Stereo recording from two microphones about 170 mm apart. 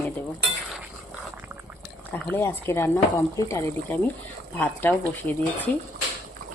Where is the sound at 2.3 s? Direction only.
15° left (ahead or behind).